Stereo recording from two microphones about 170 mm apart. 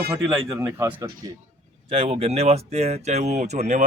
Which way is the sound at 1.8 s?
35° right (ahead or behind).